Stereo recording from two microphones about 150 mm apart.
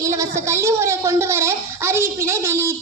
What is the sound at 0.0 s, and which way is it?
A woman's voice, 20° right (ahead or behind).